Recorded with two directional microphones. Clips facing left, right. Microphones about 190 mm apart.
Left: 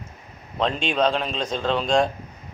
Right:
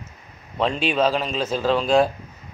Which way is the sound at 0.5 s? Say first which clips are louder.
Right 2 dB; 5° right (ahead or behind).